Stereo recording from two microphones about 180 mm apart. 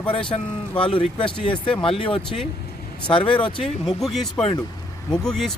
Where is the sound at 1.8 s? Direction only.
30° left (ahead or behind).